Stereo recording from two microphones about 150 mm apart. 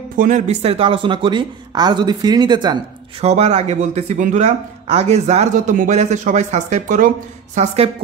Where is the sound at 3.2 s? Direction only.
45° right (ahead or behind).